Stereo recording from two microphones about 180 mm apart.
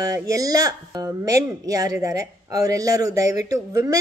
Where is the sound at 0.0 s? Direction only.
20° right (ahead or behind).